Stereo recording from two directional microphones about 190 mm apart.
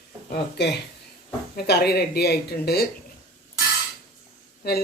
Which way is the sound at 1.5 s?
55° left (ahead or behind).